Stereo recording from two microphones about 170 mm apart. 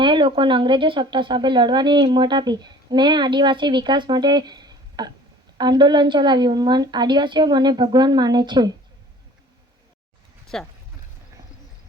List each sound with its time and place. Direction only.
0.0 s speech: 30° right (ahead or behind)
10.5 s speech: 5° left (ahead or behind)